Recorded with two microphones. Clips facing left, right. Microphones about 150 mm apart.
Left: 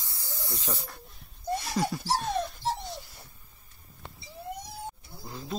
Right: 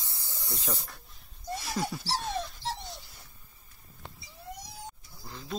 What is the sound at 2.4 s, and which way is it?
Dog, 50° left (ahead or behind).